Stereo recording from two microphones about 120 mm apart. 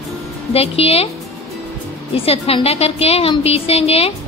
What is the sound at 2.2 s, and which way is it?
A woman's voice, 55° left (ahead or behind).